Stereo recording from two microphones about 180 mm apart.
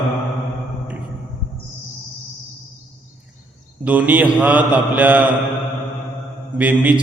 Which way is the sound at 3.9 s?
10° right (ahead or behind).